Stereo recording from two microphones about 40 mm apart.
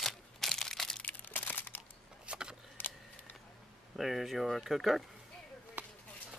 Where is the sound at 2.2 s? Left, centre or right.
Right.